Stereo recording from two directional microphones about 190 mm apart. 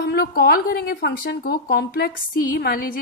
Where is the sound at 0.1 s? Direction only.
55° left (ahead or behind).